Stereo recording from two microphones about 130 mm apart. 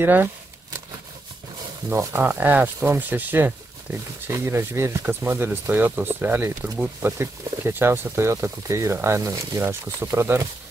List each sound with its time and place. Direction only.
0.0 s speech: 15° right (ahead or behind)
1.9 s speech: 15° right (ahead or behind)